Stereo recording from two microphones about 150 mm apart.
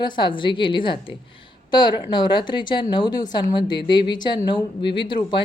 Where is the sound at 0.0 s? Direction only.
30° left (ahead or behind).